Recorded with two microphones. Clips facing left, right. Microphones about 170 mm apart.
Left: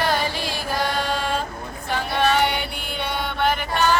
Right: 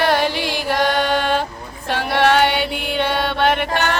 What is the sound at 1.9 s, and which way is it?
Female singing, 75° right (ahead or behind).